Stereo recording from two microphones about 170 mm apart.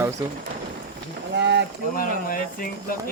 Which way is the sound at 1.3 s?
90° right.